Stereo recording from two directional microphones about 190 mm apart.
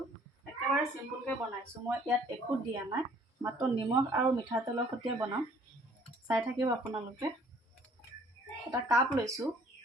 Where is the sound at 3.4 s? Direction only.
25° right (ahead or behind).